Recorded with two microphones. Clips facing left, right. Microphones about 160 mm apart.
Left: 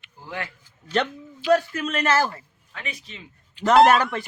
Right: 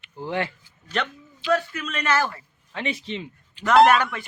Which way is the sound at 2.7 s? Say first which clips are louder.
Right 9 dB; 30° right (ahead or behind).